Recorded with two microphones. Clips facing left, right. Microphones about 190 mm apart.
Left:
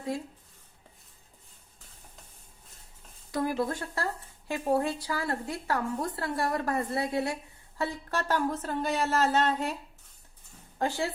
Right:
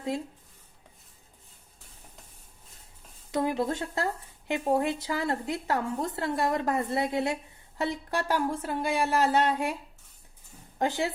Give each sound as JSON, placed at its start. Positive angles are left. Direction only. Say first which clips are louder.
{"t": 3.3, "sound": "speech", "louder": "right 2 dB", "side_deg": -20}
{"t": 10.8, "sound": "speech", "louder": "right 2 dB", "side_deg": -20}